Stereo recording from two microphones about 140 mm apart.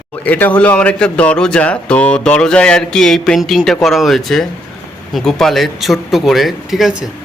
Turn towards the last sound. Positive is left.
turn(degrees=-5)  # may be behind; listen again after turning